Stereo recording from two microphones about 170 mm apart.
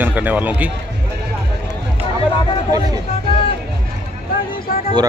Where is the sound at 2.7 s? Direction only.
20° right (ahead or behind).